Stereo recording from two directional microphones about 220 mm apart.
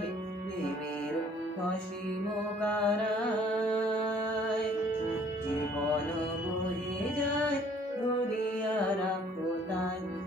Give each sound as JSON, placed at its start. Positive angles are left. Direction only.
{"t": 2.6, "sound": "music", "side_deg": 5}